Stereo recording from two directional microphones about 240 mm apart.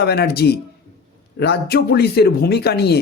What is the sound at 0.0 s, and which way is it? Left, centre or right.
A man's voice, left.